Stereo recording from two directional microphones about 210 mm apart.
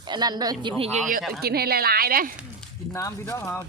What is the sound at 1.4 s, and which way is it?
Speech, 50° right (ahead or behind).